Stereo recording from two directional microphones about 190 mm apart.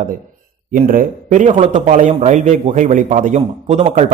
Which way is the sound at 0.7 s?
45° right (ahead or behind).